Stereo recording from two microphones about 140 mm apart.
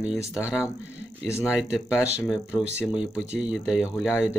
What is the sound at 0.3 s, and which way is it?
Speech, 10° right (ahead or behind).